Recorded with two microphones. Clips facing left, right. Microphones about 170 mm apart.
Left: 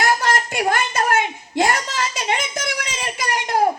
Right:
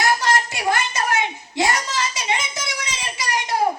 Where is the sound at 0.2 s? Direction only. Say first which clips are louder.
Left 1 dB; 55° left (ahead or behind).